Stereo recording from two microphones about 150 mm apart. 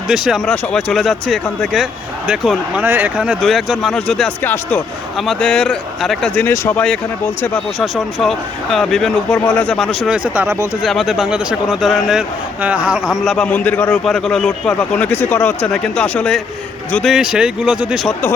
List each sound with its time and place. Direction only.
0.1 s a man's voice: centre (ahead or behind)
4.4 s speech: 15° left (ahead or behind)
5.2 s a man's voice: centre (ahead or behind); by 10.6 s 15° right (ahead or behind)
10.8 s a man's voice: centre (ahead or behind)